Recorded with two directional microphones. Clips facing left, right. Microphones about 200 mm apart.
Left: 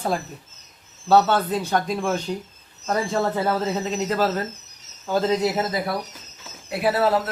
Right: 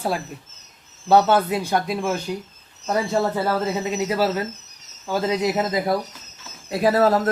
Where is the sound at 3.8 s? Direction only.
10° right (ahead or behind).